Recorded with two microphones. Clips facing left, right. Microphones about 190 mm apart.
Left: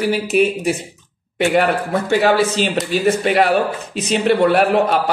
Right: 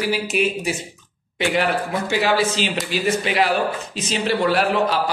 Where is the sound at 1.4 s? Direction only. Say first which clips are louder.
Left 5 dB; 45° left (ahead or behind).